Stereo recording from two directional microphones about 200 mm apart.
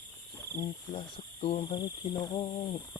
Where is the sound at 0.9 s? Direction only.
30° left (ahead or behind).